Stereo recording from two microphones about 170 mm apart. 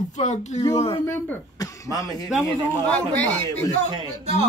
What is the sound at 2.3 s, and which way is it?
Speech, centre (ahead or behind).